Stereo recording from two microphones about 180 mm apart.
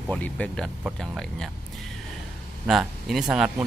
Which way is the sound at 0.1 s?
5° left (ahead or behind).